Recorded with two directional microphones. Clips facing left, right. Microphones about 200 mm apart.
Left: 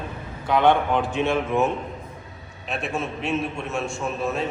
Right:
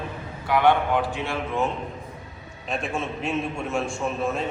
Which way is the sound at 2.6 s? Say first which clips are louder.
Even; 5° left (ahead or behind).